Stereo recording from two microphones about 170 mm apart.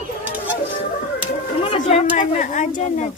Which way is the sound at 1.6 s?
40° left (ahead or behind).